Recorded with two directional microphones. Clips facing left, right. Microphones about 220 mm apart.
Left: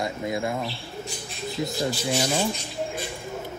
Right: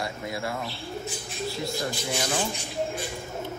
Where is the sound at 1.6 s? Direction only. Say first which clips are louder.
Left 7 dB; 20° left (ahead or behind).